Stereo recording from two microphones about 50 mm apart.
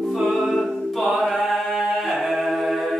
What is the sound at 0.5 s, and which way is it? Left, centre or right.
A capella, centre.